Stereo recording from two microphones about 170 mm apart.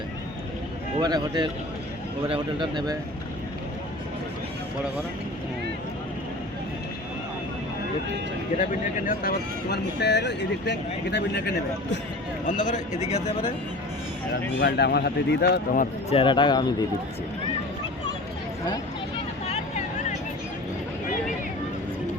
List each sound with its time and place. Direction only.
0.9 s speech: 25° right (ahead or behind)
9.0 s speech: 65° left (ahead or behind); by 11.4 s 90° left
12.5 s a man's voice: 45° left (ahead or behind)
14.6 s a man's voice: 75° left (ahead or behind); by 16.1 s 50° left (ahead or behind)
16.1 s speech: 30° left (ahead or behind)
19.5 s a sound: 45° left (ahead or behind)